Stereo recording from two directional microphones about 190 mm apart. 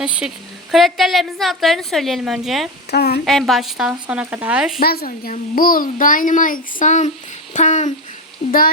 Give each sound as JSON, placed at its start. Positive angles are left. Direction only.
{"t": 0.7, "sound": "a woman's voice", "side_deg": 0}
{"t": 2.9, "sound": "speech", "side_deg": 55}
{"t": 3.2, "sound": "a woman's voice", "side_deg": 0}
{"t": 4.8, "sound": "a child's voice", "side_deg": 50}
{"t": 7.5, "sound": "a sound", "side_deg": 40}